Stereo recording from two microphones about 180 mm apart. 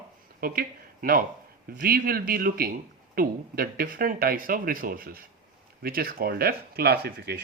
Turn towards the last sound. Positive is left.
turn(degrees=-60)  # may be behind; listen again after turning